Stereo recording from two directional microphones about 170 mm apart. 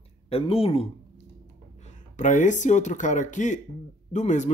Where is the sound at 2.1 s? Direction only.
45° left (ahead or behind).